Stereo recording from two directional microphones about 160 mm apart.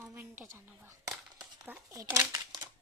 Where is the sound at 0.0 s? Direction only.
15° right (ahead or behind).